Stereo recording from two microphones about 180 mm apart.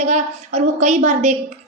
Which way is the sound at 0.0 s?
40° right (ahead or behind).